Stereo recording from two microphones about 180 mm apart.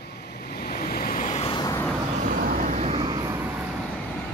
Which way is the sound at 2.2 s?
50° right (ahead or behind).